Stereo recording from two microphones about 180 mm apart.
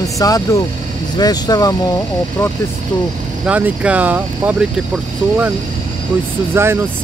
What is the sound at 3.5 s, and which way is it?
Speech, 5° right (ahead or behind).